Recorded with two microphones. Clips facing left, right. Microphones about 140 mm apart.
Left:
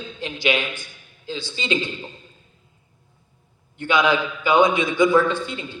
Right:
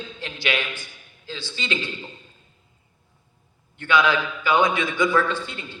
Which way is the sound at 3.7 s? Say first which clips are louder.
Left 1 dB; 15° left (ahead or behind).